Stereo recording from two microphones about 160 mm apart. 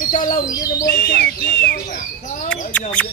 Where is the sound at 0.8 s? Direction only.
85° left.